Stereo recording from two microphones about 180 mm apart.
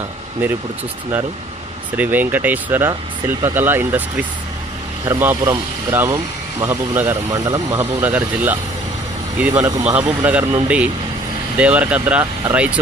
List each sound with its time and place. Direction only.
2.0 s speech: 10° right (ahead or behind)
5.0 s speech: 15° right (ahead or behind)